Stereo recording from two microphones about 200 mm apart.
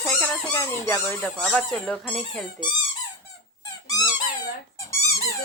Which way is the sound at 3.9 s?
20° left (ahead or behind).